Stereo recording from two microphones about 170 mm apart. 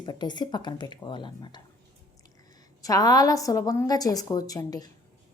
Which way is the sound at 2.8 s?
20° left (ahead or behind).